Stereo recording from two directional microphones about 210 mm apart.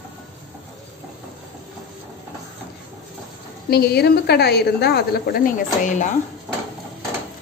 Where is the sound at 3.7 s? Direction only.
50° left (ahead or behind).